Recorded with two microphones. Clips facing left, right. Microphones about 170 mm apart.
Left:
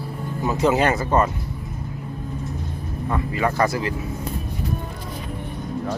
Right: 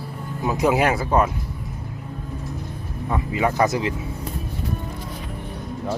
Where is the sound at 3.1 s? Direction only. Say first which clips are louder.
Right 1 dB; 15° right (ahead or behind).